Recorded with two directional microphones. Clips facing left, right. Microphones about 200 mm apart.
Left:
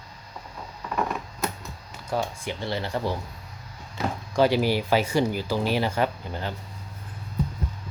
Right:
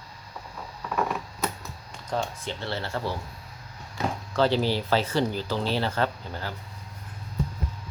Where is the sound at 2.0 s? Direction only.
10° left (ahead or behind).